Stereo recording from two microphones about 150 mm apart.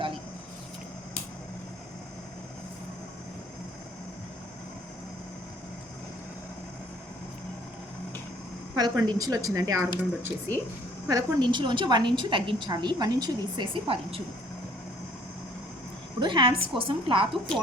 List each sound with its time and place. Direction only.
8.7 s a woman's voice: 25° right (ahead or behind)
16.2 s a woman's voice: 30° right (ahead or behind)